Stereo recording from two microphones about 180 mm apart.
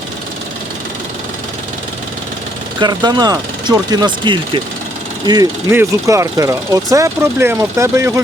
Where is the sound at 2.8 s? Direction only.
25° right (ahead or behind).